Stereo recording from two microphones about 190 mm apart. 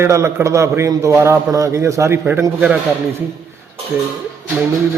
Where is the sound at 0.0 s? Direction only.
15° right (ahead or behind).